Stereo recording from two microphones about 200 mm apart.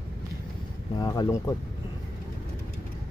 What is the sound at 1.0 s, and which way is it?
Speech, 20° left (ahead or behind).